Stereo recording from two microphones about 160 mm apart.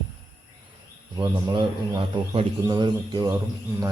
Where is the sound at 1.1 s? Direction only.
25° right (ahead or behind).